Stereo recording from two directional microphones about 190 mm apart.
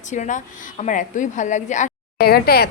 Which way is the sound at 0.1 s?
40° left (ahead or behind).